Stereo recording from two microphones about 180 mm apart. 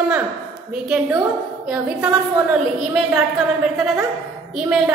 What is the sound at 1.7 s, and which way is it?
A woman's voice, 5° right (ahead or behind).